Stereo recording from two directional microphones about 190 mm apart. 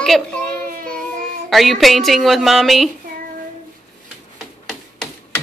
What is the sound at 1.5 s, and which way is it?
Speech, centre (ahead or behind).